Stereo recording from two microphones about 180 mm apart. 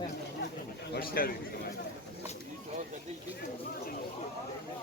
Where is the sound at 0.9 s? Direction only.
55° left (ahead or behind).